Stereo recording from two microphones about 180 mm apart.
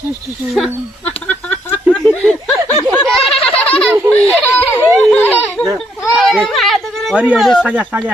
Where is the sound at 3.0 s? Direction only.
Centre (ahead or behind).